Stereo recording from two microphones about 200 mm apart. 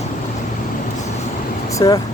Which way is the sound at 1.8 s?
15° left (ahead or behind).